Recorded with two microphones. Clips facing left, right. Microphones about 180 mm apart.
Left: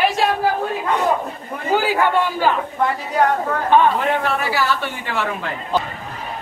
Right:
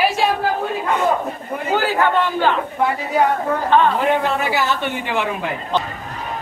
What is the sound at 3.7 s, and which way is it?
Speech, 10° left (ahead or behind).